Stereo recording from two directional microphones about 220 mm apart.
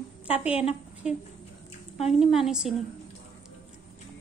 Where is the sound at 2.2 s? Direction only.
Centre (ahead or behind).